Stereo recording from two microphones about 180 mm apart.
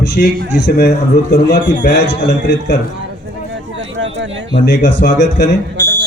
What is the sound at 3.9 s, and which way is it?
Speech, 90° right.